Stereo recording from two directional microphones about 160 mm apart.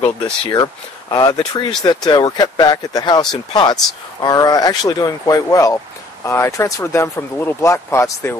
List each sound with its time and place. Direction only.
0.0 s speech: 25° left (ahead or behind)